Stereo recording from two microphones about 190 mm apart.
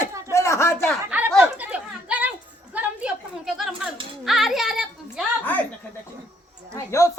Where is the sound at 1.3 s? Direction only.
5° right (ahead or behind).